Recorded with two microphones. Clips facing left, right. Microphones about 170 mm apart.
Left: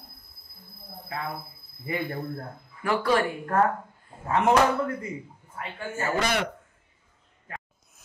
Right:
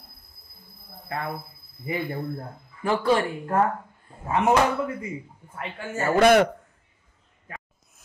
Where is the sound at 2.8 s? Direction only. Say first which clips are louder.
Right 2 dB; 25° right (ahead or behind).